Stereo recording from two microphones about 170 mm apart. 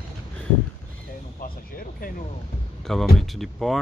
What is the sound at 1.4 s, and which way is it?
Vehicle, 60° left (ahead or behind).